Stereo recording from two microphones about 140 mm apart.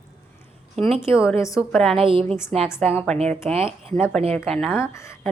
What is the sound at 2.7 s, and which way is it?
A woman's voice, 10° left (ahead or behind).